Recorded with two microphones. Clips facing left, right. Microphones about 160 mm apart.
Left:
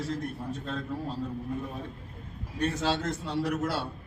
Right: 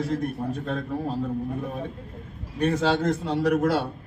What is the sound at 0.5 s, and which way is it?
Speech, 50° right (ahead or behind).